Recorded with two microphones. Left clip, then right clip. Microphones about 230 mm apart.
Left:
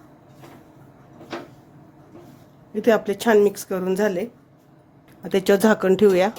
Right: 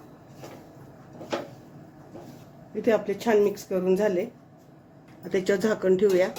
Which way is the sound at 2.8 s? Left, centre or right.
Left.